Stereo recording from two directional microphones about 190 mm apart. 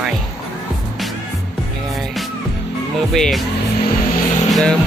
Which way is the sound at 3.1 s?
Centre (ahead or behind).